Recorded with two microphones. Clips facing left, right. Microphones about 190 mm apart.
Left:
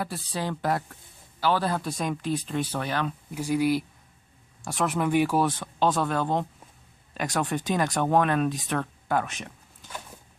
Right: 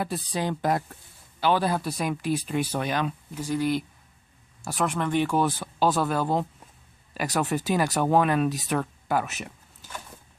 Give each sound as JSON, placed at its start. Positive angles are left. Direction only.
{"t": 0.0, "sound": "speech", "side_deg": -20}
{"t": 3.3, "sound": "speech", "side_deg": 10}